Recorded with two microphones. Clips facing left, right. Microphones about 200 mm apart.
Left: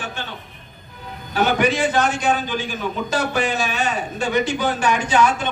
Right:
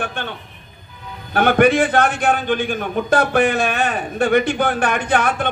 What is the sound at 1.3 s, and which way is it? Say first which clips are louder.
A man's voice: right 5 dB; 55° right (ahead or behind).